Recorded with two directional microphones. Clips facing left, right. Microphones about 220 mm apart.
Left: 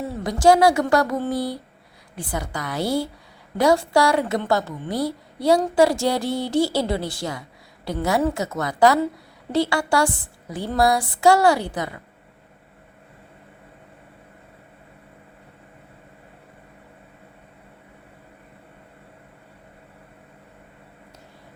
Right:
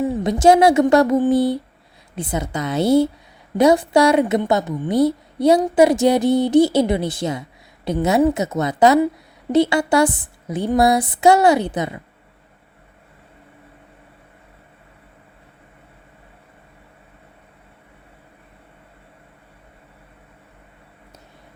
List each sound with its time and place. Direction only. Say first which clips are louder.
0.0 s a woman's voice: right 4 dB; 20° right (ahead or behind)